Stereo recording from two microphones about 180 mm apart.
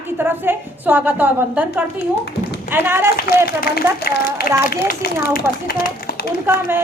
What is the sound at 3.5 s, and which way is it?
Speech, 60° left (ahead or behind).